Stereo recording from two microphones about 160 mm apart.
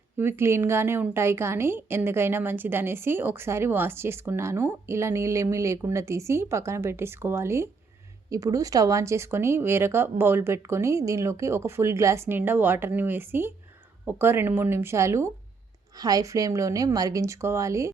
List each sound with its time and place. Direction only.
0.2 s a woman's voice: 15° right (ahead or behind)